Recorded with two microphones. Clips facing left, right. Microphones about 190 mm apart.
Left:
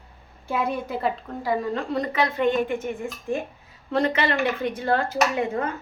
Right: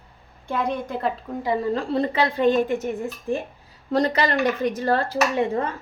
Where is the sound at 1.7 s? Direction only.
30° right (ahead or behind).